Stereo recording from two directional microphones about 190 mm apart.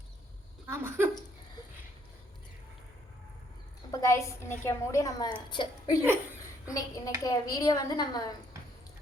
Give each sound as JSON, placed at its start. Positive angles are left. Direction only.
{"t": 0.7, "sound": "speech", "side_deg": -10}
{"t": 3.9, "sound": "a woman's voice", "side_deg": 15}